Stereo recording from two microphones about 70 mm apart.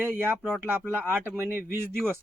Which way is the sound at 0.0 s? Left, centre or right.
Right.